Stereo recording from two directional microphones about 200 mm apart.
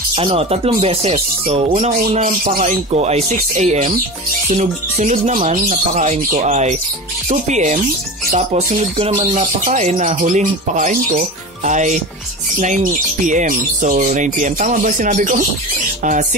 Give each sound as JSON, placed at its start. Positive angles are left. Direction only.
{"t": 0.1, "sound": "speech", "side_deg": -25}